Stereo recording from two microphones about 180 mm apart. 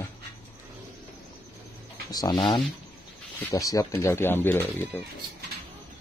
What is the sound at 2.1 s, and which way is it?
A man's voice, 20° left (ahead or behind).